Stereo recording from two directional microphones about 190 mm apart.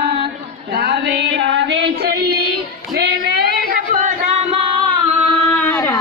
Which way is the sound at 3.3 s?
55° right (ahead or behind).